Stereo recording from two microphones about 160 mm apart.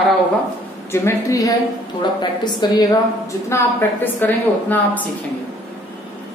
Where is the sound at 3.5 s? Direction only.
15° left (ahead or behind).